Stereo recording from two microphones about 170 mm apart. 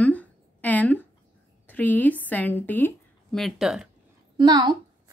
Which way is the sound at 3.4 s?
Centre (ahead or behind).